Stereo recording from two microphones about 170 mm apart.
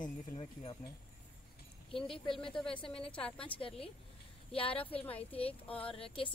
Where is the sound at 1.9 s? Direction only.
30° left (ahead or behind).